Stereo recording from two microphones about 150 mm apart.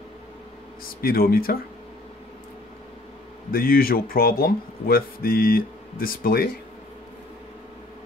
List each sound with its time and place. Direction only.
1.0 s speech: 80° left
3.5 s speech: 80° left